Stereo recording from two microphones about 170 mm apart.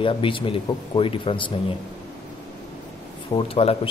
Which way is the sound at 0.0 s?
30° left (ahead or behind).